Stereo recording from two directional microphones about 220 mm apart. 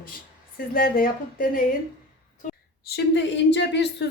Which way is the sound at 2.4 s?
35° left (ahead or behind).